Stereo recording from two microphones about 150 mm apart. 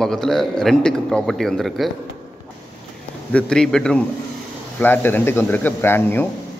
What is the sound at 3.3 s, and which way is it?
A man's voice, 5° left (ahead or behind).